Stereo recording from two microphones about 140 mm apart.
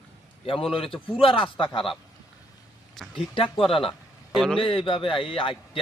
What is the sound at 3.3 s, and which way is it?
Speech, 40° left (ahead or behind).